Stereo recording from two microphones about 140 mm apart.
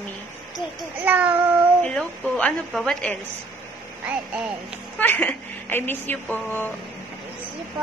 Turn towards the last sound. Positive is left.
turn(degrees=15)  # may be behind; listen again after turning